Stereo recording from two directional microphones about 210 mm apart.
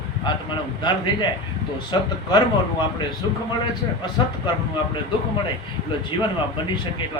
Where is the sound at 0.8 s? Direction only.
20° left (ahead or behind).